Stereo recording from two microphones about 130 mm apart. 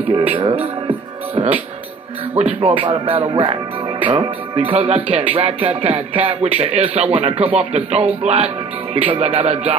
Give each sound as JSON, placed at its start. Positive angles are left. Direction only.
{"t": 0.1, "sound": "speech", "side_deg": -50}
{"t": 2.6, "sound": "speech", "side_deg": -40}